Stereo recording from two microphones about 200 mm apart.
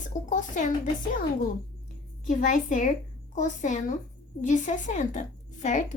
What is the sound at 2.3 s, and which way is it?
A woman's voice, 40° left (ahead or behind).